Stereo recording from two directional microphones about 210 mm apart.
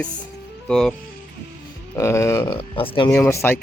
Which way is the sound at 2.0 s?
15° left (ahead or behind).